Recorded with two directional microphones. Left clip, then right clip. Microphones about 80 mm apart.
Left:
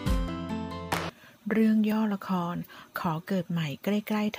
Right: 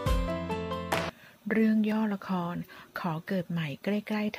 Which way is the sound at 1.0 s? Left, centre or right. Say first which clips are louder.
Even; left.